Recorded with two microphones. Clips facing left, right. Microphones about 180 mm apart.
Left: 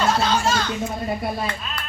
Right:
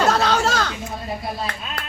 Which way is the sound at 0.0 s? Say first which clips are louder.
Right 2 dB; 70° right (ahead or behind).